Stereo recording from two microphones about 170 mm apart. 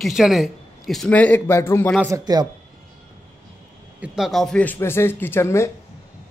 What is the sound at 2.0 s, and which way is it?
Speech, 20° right (ahead or behind).